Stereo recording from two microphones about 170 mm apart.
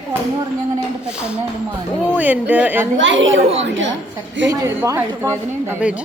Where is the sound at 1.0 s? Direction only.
5° right (ahead or behind).